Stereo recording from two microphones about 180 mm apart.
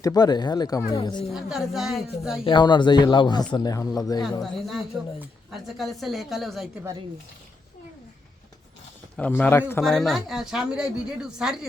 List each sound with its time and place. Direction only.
0.0 s speech: 20° left (ahead or behind)
1.3 s a woman's voice: centre (ahead or behind)
2.4 s speech: 25° left (ahead or behind)
4.5 s a woman's voice: centre (ahead or behind)
9.1 s speech: 10° left (ahead or behind)
9.8 s a woman's voice: centre (ahead or behind)